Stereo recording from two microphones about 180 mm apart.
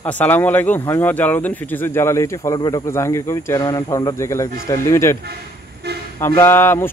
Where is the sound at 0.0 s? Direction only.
10° left (ahead or behind).